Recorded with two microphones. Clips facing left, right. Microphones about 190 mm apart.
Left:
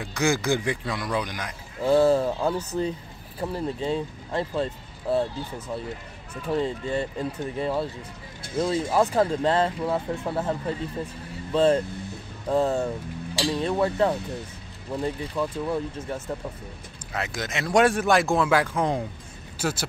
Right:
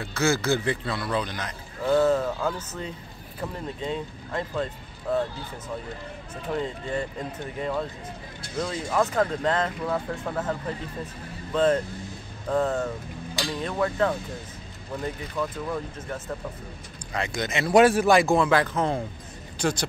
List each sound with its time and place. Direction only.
0.0 s a man's voice: 15° left (ahead or behind)
1.8 s a sound: 30° left (ahead or behind)
2.7 s speech: 30° left (ahead or behind)
6.5 s speech: 25° left (ahead or behind)
15.3 s a man's voice: 10° left (ahead or behind)
17.1 s speech: 5° left (ahead or behind)
18.5 s a man's voice: 10° left (ahead or behind)